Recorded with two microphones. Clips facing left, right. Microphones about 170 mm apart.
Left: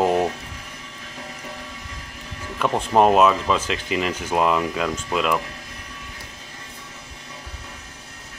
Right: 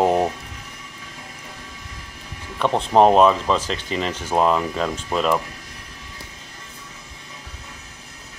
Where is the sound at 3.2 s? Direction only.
5° left (ahead or behind).